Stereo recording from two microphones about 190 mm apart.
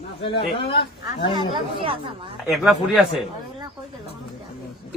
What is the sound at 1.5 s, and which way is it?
Speech, 30° right (ahead or behind).